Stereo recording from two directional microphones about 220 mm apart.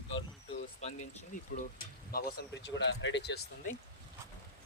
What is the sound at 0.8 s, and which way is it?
Speech, 30° left (ahead or behind).